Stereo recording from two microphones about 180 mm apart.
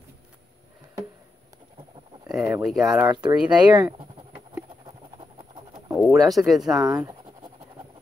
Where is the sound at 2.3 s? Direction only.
5° right (ahead or behind).